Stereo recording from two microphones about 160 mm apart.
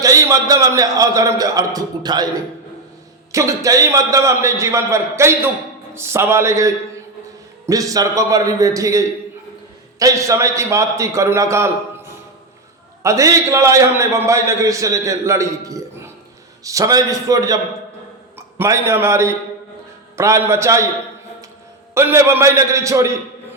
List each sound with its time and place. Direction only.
0.0 s a man's voice: 20° right (ahead or behind)
3.3 s a man's voice: 20° right (ahead or behind)
13.0 s a man's voice: 20° right (ahead or behind)
21.9 s a man's voice: 15° right (ahead or behind)